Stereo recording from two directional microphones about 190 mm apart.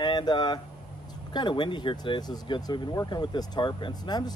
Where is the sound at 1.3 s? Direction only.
25° left (ahead or behind).